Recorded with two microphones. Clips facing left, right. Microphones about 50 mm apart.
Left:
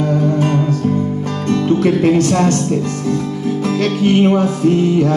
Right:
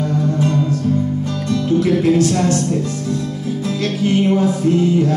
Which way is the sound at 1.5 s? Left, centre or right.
Left.